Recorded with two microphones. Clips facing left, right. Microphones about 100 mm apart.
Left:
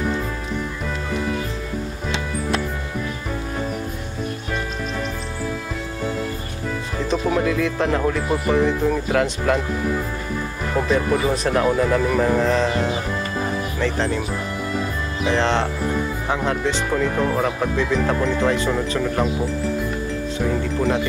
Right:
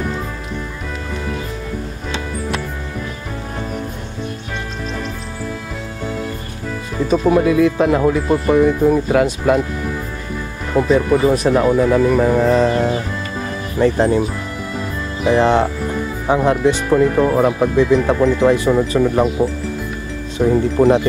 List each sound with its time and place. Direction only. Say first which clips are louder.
7.1 s speech: right 7 dB; 5° right (ahead or behind)
10.7 s speech: right 6 dB; centre (ahead or behind)
14.7 s music: right 1 dB; 5° right (ahead or behind)
16.3 s speech: right 10 dB; 15° right (ahead or behind)
16.9 s speech: right 7 dB; 5° right (ahead or behind)
20.4 s speech: right 9 dB; 20° right (ahead or behind)
20.8 s music: right 10 dB; 30° right (ahead or behind)